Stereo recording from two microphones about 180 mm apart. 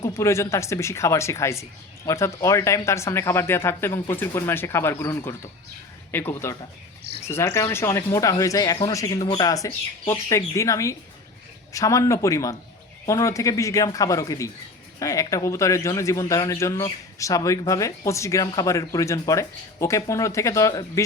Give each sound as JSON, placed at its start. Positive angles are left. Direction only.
{"t": 0.0, "sound": "speech", "side_deg": 15}